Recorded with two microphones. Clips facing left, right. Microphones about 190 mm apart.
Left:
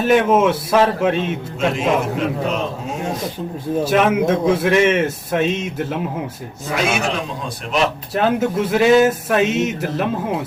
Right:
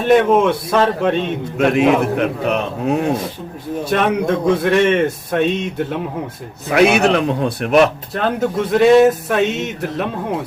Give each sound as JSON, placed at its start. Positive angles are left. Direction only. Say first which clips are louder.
{"t": 0.0, "sound": "speech", "louder": "right 2 dB", "side_deg": 0}
{"t": 1.5, "sound": "a man's voice", "louder": "right 5 dB", "side_deg": -60}
{"t": 3.8, "sound": "speech", "louder": "even", "side_deg": 5}
{"t": 6.7, "sound": "a man's voice", "louder": "right 8 dB", "side_deg": -60}
{"t": 8.1, "sound": "speech", "louder": "left 1 dB", "side_deg": 5}